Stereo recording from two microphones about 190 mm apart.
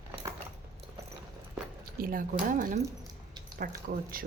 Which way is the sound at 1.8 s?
50° right (ahead or behind).